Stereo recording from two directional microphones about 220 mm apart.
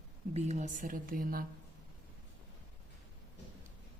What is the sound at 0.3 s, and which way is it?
Speech, 30° right (ahead or behind).